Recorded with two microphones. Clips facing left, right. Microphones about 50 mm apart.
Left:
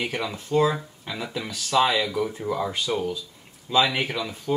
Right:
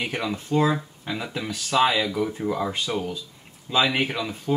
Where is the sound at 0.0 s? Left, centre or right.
Centre.